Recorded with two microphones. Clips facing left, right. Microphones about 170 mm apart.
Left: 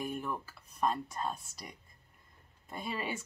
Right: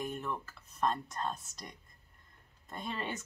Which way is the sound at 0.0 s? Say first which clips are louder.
Left 1 dB; 10° left (ahead or behind).